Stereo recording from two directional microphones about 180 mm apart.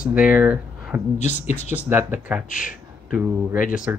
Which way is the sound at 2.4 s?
45° left (ahead or behind).